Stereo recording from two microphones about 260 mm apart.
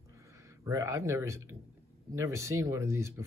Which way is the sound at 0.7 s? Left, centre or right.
Centre.